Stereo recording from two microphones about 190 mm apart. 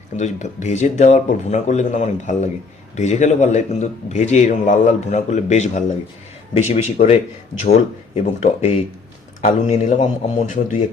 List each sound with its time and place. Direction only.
0.2 s a man's voice: 40° left (ahead or behind)